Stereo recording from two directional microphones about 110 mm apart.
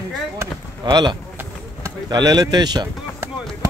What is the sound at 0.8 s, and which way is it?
Speech, 45° right (ahead or behind).